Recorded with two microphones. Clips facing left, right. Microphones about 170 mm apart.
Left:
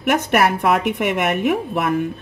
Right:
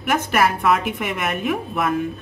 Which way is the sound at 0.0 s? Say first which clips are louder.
Left 2 dB; 65° left (ahead or behind).